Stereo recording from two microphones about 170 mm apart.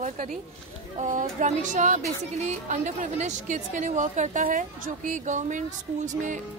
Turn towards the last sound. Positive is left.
turn(degrees=-45)  # may be behind; listen again after turning